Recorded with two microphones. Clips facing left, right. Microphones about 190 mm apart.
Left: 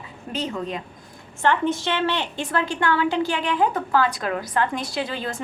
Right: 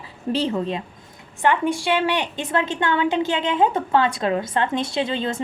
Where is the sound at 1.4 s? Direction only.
15° right (ahead or behind).